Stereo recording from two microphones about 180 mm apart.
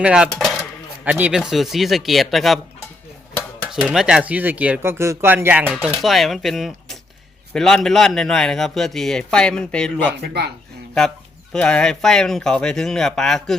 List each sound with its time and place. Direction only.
0.0 s speech: 5° right (ahead or behind)
3.7 s a man's voice: 5° right (ahead or behind)
10.2 s speech: 65° right (ahead or behind)
11.5 s a man's voice: 5° left (ahead or behind)